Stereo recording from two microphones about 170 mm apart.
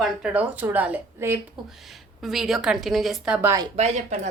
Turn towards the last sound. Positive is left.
turn(degrees=-45)  # may be behind; listen again after turning